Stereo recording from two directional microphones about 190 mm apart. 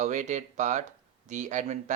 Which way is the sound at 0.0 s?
40° right (ahead or behind).